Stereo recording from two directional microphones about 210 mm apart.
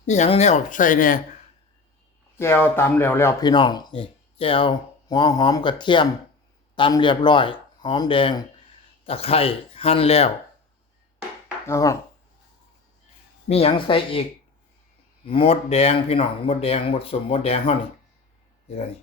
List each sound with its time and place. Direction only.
0.0 s speech: 35° left (ahead or behind)
2.4 s speech: 10° left (ahead or behind); by 10.3 s 30° left (ahead or behind)
11.6 s speech: 15° left (ahead or behind)
13.5 s speech: 25° left (ahead or behind)
15.3 s speech: 25° left (ahead or behind)